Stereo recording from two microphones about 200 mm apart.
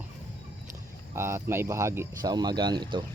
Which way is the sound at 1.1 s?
15° right (ahead or behind).